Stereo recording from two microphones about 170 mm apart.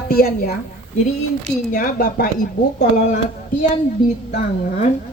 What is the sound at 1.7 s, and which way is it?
Speech, 55° left (ahead or behind).